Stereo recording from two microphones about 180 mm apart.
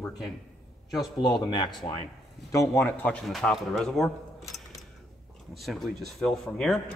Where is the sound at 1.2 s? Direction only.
25° left (ahead or behind); by 4.1 s centre (ahead or behind).